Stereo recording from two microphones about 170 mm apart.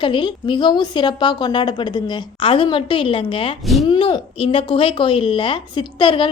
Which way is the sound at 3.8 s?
25° left (ahead or behind).